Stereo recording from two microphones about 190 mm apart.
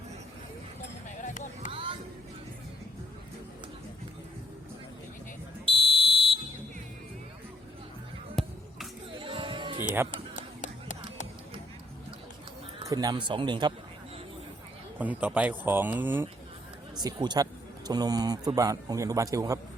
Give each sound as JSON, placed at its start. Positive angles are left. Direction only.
{"t": 1.0, "sound": "a sound", "side_deg": 40}
{"t": 1.7, "sound": "music", "side_deg": -30}
{"t": 5.6, "sound": "smoke detector", "side_deg": -30}
{"t": 8.4, "sound": "basketball bounce", "side_deg": 0}
{"t": 9.1, "sound": "music", "side_deg": -30}
{"t": 12.9, "sound": "a man's voice", "side_deg": -20}
{"t": 14.9, "sound": "a man's voice", "side_deg": -10}